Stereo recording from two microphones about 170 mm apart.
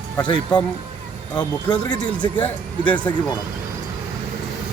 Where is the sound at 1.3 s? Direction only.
25° left (ahead or behind).